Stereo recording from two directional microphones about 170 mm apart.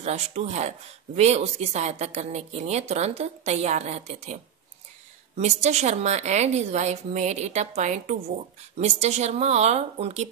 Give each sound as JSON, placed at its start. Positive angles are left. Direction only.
{"t": 0.0, "sound": "speech", "side_deg": -40}